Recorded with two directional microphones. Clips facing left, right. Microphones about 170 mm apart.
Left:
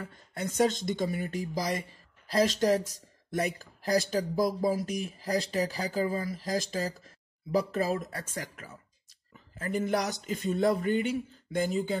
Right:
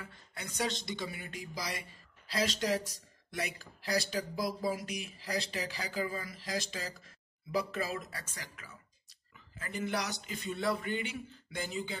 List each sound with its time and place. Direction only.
0.0 s speech: 45° left (ahead or behind)